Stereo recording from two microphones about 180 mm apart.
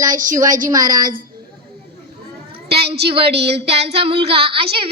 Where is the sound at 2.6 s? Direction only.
65° right (ahead or behind).